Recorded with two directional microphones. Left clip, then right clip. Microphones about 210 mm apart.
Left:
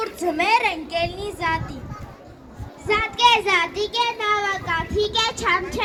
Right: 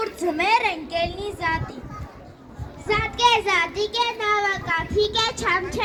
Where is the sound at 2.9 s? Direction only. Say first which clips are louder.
Left 2 dB; 55° left (ahead or behind).